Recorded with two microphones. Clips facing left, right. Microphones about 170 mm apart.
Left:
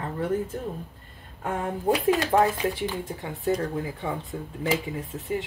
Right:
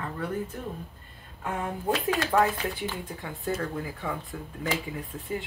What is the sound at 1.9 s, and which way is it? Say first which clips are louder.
Speech: left 5 dB; 15° left (ahead or behind).